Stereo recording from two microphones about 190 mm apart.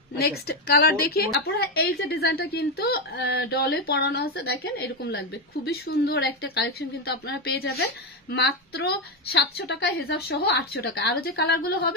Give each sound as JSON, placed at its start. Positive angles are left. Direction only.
{"t": 0.2, "sound": "a woman's voice", "side_deg": 55}